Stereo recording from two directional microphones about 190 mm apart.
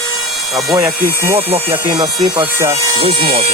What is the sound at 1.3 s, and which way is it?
Speech, 30° right (ahead or behind).